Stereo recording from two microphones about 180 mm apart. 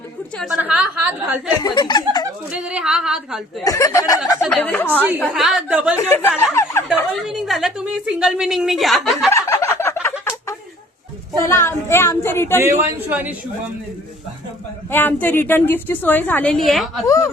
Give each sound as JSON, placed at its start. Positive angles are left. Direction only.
{"t": 0.3, "sound": "a woman's voice", "side_deg": -5}
{"t": 1.5, "sound": "speech", "side_deg": 25}
{"t": 2.5, "sound": "a woman's voice", "side_deg": -5}
{"t": 3.6, "sound": "speech", "side_deg": 20}
{"t": 4.4, "sound": "a woman's voice", "side_deg": 5}
{"t": 4.9, "sound": "a woman's voice", "side_deg": -10}
{"t": 6.0, "sound": "a woman's voice", "side_deg": 10}
{"t": 6.4, "sound": "a sound", "side_deg": 15}
{"t": 7.1, "sound": "a woman's voice", "side_deg": 0}
{"t": 9.3, "sound": "fowl", "side_deg": 15}
{"t": 11.4, "sound": "a woman's voice", "side_deg": 15}
{"t": 12.5, "sound": "a woman's voice", "side_deg": -10}
{"t": 14.8, "sound": "a woman's voice", "side_deg": 10}
{"t": 17.1, "sound": "a woman's voice", "side_deg": 15}